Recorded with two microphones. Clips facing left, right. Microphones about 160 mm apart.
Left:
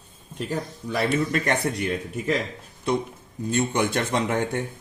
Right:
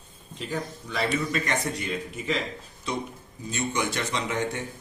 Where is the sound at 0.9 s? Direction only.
55° left (ahead or behind).